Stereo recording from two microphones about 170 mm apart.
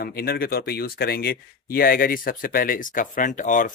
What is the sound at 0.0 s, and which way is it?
Speech, 60° left (ahead or behind).